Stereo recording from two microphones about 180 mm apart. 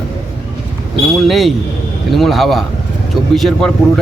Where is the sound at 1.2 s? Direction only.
Centre (ahead or behind).